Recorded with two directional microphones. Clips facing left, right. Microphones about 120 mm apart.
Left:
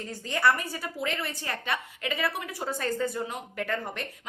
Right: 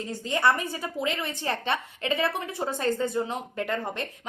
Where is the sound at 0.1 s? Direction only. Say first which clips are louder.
Right 1 dB; 20° right (ahead or behind).